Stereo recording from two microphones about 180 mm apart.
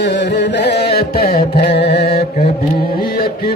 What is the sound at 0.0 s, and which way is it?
Carnatic music, 70° left (ahead or behind).